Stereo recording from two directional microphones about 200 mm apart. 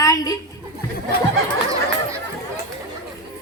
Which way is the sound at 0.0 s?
15° left (ahead or behind).